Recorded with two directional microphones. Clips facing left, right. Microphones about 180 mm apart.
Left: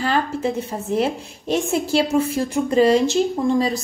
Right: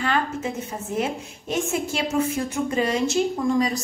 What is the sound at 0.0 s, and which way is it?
A woman's voice, 35° left (ahead or behind).